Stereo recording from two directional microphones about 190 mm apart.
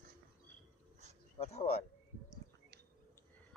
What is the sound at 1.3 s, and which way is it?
Speech, 35° left (ahead or behind).